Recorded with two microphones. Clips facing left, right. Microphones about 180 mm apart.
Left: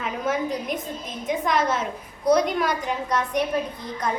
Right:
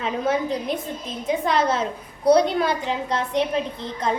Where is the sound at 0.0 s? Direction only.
30° right (ahead or behind).